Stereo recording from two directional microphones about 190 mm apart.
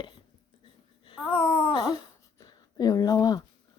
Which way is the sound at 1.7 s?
20° left (ahead or behind).